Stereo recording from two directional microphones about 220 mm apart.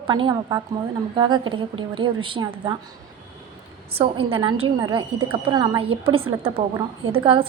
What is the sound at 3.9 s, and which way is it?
A woman's voice, 25° right (ahead or behind).